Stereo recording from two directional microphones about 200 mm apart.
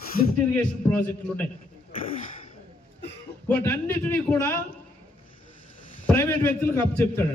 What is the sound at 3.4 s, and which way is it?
A man's voice, 10° left (ahead or behind).